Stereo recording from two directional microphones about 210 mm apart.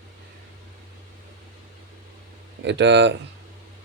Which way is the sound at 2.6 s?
55° right (ahead or behind).